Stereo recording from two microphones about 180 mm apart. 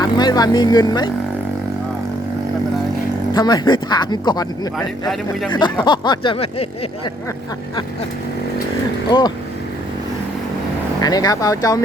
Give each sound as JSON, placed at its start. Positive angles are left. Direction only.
{"t": 0.0, "sound": "speech", "side_deg": 20}
{"t": 3.3, "sound": "speech", "side_deg": 20}
{"t": 5.5, "sound": "speech", "side_deg": 25}
{"t": 9.0, "sound": "speech", "side_deg": 25}
{"t": 11.0, "sound": "speech", "side_deg": 20}